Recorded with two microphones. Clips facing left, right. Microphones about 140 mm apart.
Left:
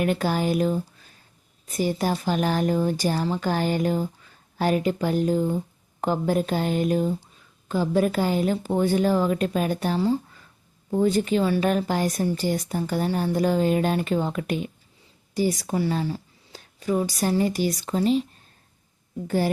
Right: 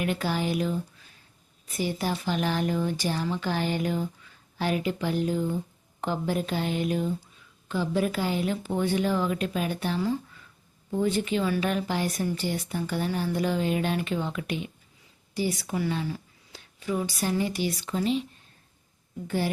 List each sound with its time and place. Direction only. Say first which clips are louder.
0.0 s speech: left 5 dB; 45° left (ahead or behind)